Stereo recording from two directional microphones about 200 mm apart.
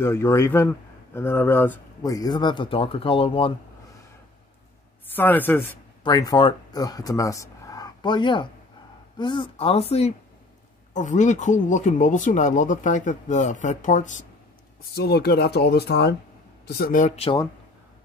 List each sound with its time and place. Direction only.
0.0 s speech: 10° left (ahead or behind)
5.1 s speech: 10° left (ahead or behind)
6.0 s speech: 20° left (ahead or behind); by 14.2 s 40° left (ahead or behind)
15.0 s speech: 50° left (ahead or behind); by 17.4 s 30° left (ahead or behind)